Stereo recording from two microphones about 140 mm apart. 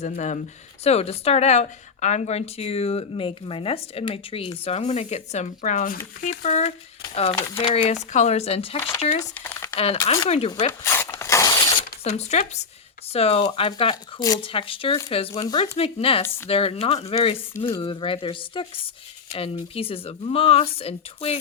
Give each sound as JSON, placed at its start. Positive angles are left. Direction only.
{"t": 0.0, "sound": "speech", "side_deg": 60}
{"t": 0.9, "sound": "a woman's voice", "side_deg": 45}
{"t": 6.2, "sound": "a woman's voice", "side_deg": 60}
{"t": 9.3, "sound": "speech", "side_deg": 10}
{"t": 9.7, "sound": "a woman's voice", "side_deg": 45}
{"t": 10.7, "sound": "dog", "side_deg": 20}
{"t": 11.5, "sound": "zipper", "side_deg": 40}
{"t": 12.0, "sound": "a woman's voice", "side_deg": 50}
{"t": 13.9, "sound": "speech", "side_deg": 25}
{"t": 14.4, "sound": "speech", "side_deg": 40}
{"t": 15.4, "sound": "speech", "side_deg": 25}
{"t": 15.8, "sound": "a woman's voice", "side_deg": 45}